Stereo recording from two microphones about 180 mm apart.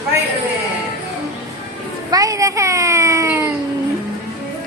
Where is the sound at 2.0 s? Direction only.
20° right (ahead or behind).